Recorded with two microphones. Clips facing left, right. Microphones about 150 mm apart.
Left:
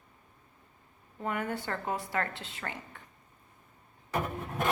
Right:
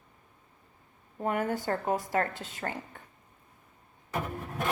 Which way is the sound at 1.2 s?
40° right (ahead or behind).